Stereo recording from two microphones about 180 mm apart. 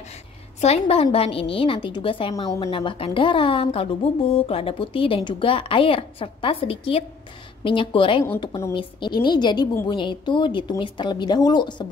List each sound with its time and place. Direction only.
0.6 s a woman's voice: 35° left (ahead or behind)
8.4 s a woman's voice: 15° left (ahead or behind)